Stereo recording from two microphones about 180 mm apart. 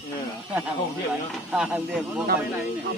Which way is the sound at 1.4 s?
5° right (ahead or behind).